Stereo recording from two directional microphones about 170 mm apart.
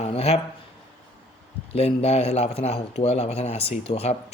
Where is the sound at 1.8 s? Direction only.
35° left (ahead or behind).